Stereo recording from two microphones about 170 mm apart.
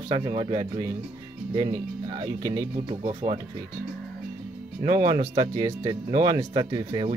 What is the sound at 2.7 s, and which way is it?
Speech, 35° right (ahead or behind).